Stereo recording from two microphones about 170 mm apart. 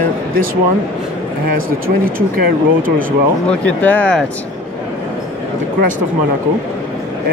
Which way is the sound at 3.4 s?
10° left (ahead or behind).